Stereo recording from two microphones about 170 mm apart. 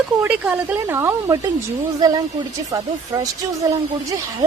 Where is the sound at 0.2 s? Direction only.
10° right (ahead or behind).